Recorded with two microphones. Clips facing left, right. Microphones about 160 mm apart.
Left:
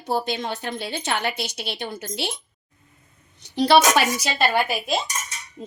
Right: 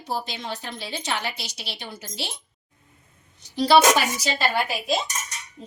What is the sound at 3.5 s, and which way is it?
Speech, 65° left (ahead or behind).